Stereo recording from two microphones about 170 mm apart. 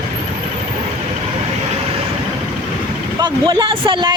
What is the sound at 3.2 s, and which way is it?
Speech, 30° right (ahead or behind).